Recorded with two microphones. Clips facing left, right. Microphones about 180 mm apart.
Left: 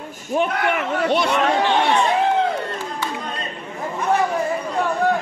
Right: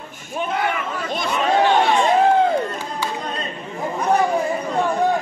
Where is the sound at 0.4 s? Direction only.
75° left (ahead or behind).